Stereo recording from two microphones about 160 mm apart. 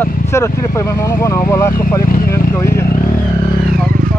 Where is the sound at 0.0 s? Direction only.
15° left (ahead or behind).